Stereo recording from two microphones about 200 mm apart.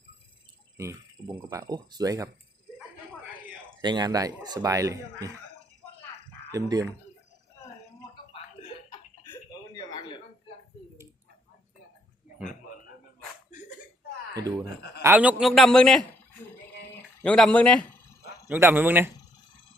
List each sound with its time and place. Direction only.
0.8 s speech: 15° right (ahead or behind)
3.8 s speech: 20° right (ahead or behind)
6.5 s speech: 20° right (ahead or behind)
8.9 s a sound: 20° left (ahead or behind)
14.3 s speech: 20° right (ahead or behind)
15.0 s a man's voice: 10° right (ahead or behind)
17.2 s a man's voice: 5° left (ahead or behind)
18.4 s speech: 10° right (ahead or behind)